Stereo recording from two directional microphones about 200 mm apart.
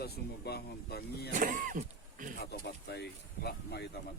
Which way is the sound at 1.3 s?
40° right (ahead or behind).